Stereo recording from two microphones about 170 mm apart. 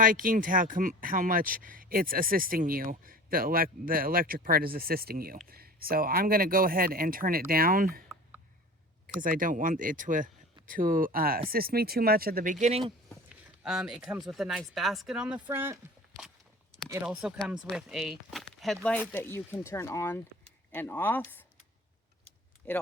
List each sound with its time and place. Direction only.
0.0 s speech: 55° right (ahead or behind)
9.0 s speech: 55° right (ahead or behind)
13.7 s speech: 5° right (ahead or behind)
22.6 s speech: 10° left (ahead or behind)